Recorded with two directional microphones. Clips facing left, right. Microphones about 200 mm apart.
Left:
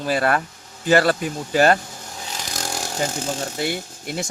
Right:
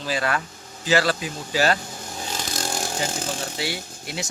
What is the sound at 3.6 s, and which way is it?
Speech, 50° left (ahead or behind).